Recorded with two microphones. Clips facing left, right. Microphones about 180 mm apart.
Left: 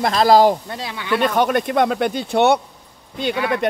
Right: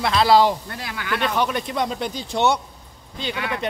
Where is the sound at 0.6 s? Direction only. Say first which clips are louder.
Left 4 dB; 25° left (ahead or behind).